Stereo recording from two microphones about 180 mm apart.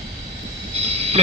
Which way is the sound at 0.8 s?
35° right (ahead or behind).